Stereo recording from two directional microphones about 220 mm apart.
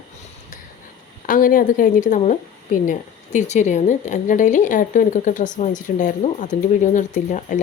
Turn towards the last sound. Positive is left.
turn(degrees=35)  # may be behind; listen again after turning